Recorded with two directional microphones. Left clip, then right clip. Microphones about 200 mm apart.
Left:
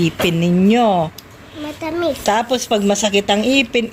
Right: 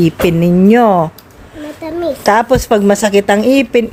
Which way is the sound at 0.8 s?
30° right (ahead or behind).